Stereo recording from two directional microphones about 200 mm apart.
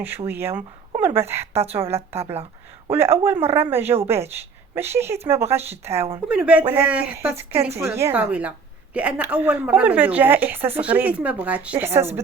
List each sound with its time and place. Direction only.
0.3 s speech: 10° right (ahead or behind)
1.8 s a woman's voice: 30° right (ahead or behind)
2.9 s a woman's voice: 10° right (ahead or behind)